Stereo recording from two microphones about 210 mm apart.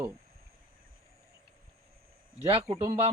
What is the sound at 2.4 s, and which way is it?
Speech, 30° right (ahead or behind).